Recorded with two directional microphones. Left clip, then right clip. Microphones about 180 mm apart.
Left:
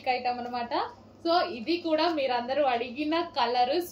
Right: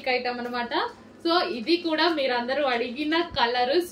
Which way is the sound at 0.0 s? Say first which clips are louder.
Right 2 dB; 15° right (ahead or behind).